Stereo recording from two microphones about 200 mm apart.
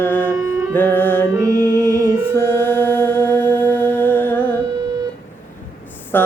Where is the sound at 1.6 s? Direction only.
20° right (ahead or behind).